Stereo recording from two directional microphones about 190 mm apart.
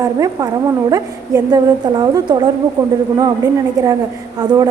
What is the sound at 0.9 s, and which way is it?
A woman's voice, 20° right (ahead or behind).